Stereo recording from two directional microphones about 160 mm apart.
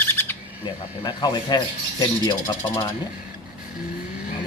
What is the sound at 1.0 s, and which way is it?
Speech, 25° left (ahead or behind).